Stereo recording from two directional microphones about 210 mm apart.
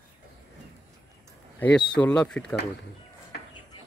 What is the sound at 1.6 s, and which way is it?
Speech, 5° left (ahead or behind).